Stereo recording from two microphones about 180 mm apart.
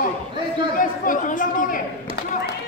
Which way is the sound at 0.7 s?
50° left (ahead or behind).